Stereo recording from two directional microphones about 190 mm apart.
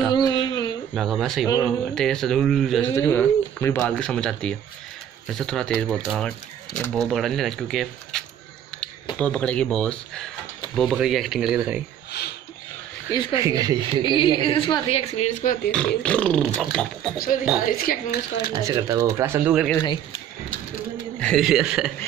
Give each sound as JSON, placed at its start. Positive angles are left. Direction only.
{"t": 0.1, "sound": "a sound", "side_deg": 25}
{"t": 0.9, "sound": "speech", "side_deg": 0}
{"t": 2.9, "sound": "speech", "side_deg": 15}
{"t": 9.2, "sound": "speech", "side_deg": 5}
{"t": 12.1, "sound": "speech", "side_deg": 60}
{"t": 13.1, "sound": "a woman's voice", "side_deg": 25}
{"t": 13.4, "sound": "speech", "side_deg": -20}
{"t": 14.0, "sound": "a woman's voice", "side_deg": 25}
{"t": 16.0, "sound": "speech", "side_deg": 5}
{"t": 17.2, "sound": "speech", "side_deg": 45}
{"t": 18.5, "sound": "speech", "side_deg": -20}
{"t": 21.2, "sound": "speech", "side_deg": 0}